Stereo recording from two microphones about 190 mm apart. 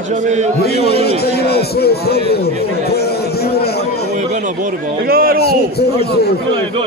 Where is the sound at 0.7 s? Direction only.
55° left (ahead or behind).